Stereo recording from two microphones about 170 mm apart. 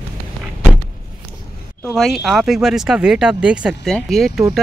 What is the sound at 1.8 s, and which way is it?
Speech, centre (ahead or behind).